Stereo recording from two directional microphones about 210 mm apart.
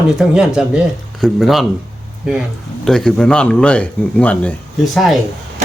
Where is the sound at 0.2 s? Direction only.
5° right (ahead or behind).